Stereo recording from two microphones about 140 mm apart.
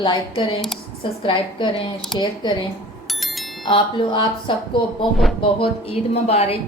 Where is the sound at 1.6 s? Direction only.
35° left (ahead or behind).